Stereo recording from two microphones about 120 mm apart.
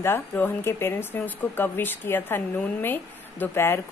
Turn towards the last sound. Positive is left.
turn(degrees=20)  # may be behind; listen again after turning